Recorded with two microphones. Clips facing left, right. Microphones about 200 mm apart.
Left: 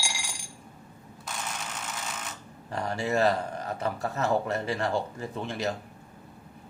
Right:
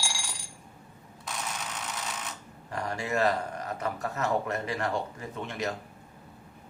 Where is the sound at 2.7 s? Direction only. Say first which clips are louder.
Left 3 dB; 30° left (ahead or behind).